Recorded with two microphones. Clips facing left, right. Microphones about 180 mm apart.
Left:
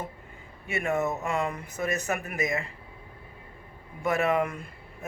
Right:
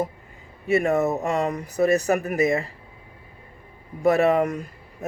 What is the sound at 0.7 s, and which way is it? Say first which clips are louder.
Speech: right 7 dB; 35° right (ahead or behind).